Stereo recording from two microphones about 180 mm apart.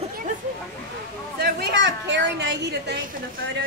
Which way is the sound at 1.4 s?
70° right (ahead or behind).